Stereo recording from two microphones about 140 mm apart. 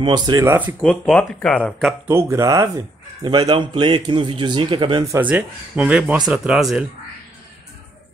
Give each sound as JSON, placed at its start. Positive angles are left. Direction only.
{"t": 0.0, "sound": "speech", "side_deg": -30}
{"t": 0.7, "sound": "speech", "side_deg": 5}
{"t": 2.0, "sound": "speech", "side_deg": -20}
{"t": 3.3, "sound": "a man's voice", "side_deg": -35}
{"t": 5.2, "sound": "speech", "side_deg": -10}